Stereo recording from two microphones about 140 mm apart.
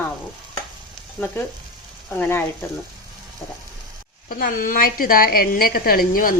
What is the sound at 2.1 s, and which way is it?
Speech, 15° left (ahead or behind).